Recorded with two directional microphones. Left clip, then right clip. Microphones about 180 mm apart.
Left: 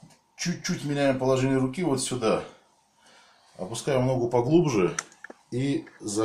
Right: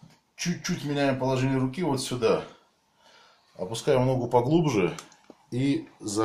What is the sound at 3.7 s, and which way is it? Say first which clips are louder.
Speech: right 1 dB; 20° right (ahead or behind).